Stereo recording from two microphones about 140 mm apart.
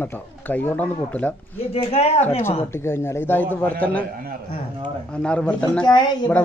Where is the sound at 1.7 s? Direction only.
45° left (ahead or behind).